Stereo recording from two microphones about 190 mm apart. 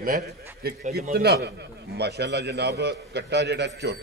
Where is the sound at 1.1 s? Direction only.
60° right (ahead or behind).